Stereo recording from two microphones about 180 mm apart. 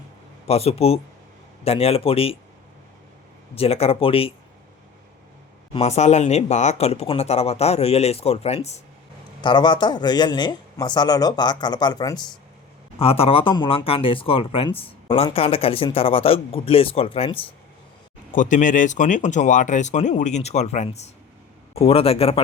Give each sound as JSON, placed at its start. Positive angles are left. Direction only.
{"t": 0.4, "sound": "speech", "side_deg": 35}
{"t": 3.5, "sound": "speech", "side_deg": 35}
{"t": 5.7, "sound": "speech", "side_deg": 40}
{"t": 9.4, "sound": "speech", "side_deg": 25}
{"t": 18.3, "sound": "speech", "side_deg": 45}